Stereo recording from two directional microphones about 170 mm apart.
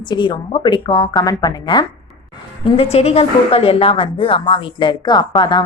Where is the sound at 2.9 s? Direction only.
35° left (ahead or behind).